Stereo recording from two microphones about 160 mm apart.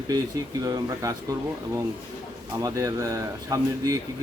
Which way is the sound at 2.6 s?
20° right (ahead or behind).